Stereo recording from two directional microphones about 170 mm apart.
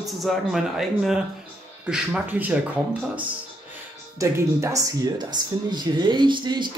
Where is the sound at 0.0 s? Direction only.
Centre (ahead or behind).